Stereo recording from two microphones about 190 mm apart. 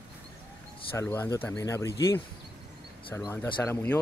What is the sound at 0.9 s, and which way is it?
Speech, 10° left (ahead or behind).